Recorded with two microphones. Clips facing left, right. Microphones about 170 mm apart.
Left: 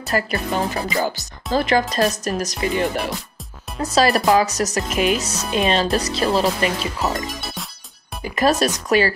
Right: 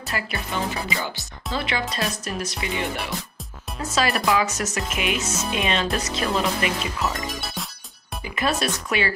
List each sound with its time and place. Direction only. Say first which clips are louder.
0.1 s speech: left 7 dB; 40° left (ahead or behind)
7.2 s music: left 1 dB; centre (ahead or behind)
8.2 s speech: left 7 dB; 40° left (ahead or behind)